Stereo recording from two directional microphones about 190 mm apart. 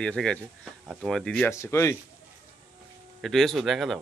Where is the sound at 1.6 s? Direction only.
15° left (ahead or behind).